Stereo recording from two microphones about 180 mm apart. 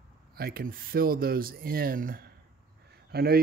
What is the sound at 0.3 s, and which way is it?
Speech, 55° right (ahead or behind).